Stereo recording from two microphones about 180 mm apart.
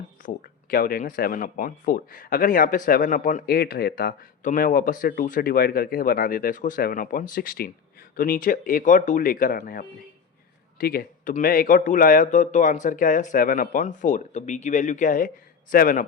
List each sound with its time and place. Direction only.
0.2 s speech: 50° left (ahead or behind)